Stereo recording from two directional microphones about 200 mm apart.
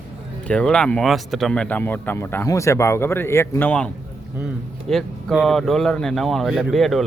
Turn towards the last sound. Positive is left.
turn(degrees=0)  # may be behind; listen again after turning